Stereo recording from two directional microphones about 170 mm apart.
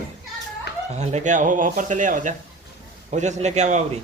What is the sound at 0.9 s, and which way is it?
A man's voice, 40° right (ahead or behind).